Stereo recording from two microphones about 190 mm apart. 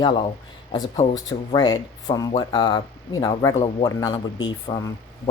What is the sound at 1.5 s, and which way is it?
Speech, 20° left (ahead or behind).